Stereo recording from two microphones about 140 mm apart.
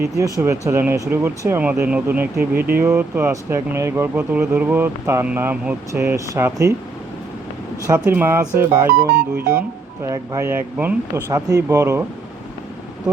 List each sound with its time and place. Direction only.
0.3 s speech: 20° right (ahead or behind)
2.5 s speech: 90° right
2.7 s speech: 20° right (ahead or behind)
7.9 s speech: 15° right (ahead or behind)
8.9 s speech: 90° right
9.5 s speech: 20° right (ahead or behind)